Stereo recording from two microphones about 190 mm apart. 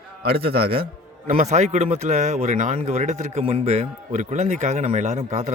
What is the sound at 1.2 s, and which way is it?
Speech, 40° right (ahead or behind).